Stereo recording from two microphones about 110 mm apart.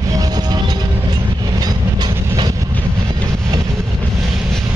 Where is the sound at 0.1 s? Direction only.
35° right (ahead or behind).